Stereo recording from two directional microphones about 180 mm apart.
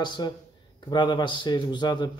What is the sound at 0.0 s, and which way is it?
Speech, 25° left (ahead or behind).